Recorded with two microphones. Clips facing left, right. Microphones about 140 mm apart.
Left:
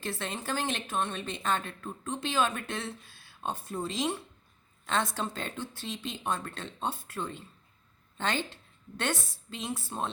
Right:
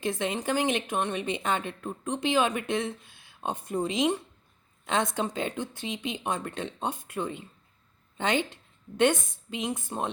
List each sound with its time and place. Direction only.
0.0 s a woman's voice: 15° right (ahead or behind)